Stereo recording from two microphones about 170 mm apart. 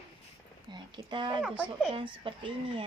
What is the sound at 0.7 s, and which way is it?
Speech, 25° right (ahead or behind).